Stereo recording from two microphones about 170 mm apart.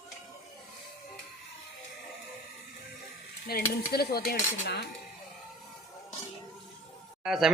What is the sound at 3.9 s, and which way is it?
Dishes, 65° left (ahead or behind).